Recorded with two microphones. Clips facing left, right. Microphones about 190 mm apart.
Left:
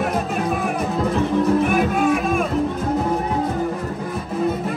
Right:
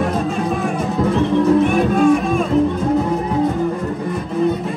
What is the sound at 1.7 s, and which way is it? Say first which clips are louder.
Music: right 4 dB; centre (ahead or behind).